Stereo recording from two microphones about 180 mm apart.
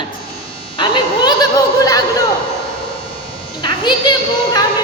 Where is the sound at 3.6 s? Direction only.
25° left (ahead or behind).